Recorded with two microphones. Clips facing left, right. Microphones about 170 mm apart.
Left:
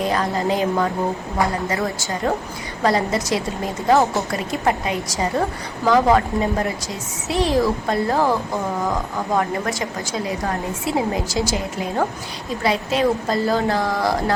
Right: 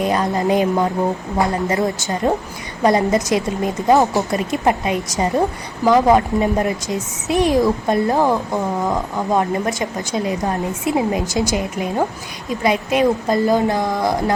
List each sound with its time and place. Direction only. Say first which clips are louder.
0.0 s a woman's voice: right 3 dB; 20° right (ahead or behind)